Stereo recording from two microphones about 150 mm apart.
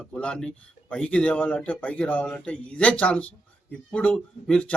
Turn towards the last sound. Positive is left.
turn(degrees=5)  # may be behind; listen again after turning